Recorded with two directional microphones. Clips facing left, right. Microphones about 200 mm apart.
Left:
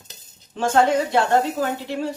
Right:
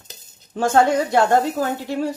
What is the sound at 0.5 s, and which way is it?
Speech, 45° right (ahead or behind).